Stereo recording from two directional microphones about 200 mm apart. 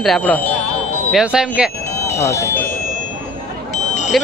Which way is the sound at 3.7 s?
35° left (ahead or behind).